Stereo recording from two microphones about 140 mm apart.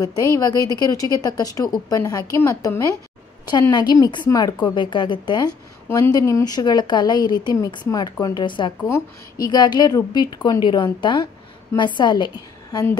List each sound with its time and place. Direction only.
0.0 s a woman's voice: 30° left (ahead or behind)
5.9 s a woman's voice: 20° left (ahead or behind)